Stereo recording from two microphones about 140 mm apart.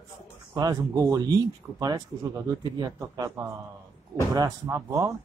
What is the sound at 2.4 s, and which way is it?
Speech, 25° right (ahead or behind).